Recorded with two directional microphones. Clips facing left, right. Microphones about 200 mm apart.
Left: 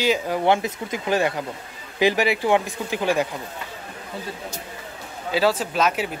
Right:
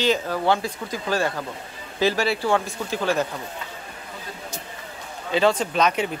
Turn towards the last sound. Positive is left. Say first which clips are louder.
# right 1 dB
turn(degrees=5)  # may be behind; listen again after turning